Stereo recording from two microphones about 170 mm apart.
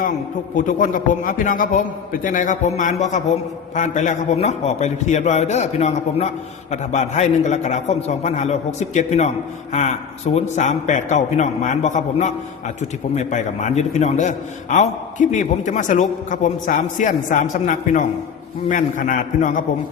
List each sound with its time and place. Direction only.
0.5 s a man's voice: 50° left (ahead or behind)